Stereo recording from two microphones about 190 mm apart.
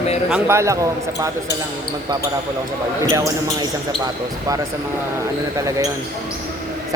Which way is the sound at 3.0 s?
15° right (ahead or behind).